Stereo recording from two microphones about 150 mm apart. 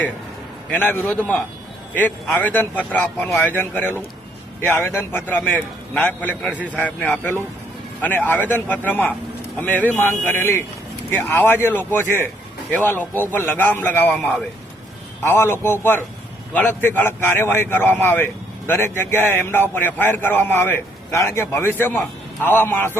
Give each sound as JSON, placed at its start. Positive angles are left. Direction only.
{"t": 0.7, "sound": "a man's voice", "side_deg": 10}
{"t": 15.2, "sound": "a man's voice", "side_deg": 15}